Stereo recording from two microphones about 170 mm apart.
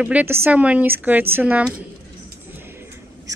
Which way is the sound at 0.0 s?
10° right (ahead or behind).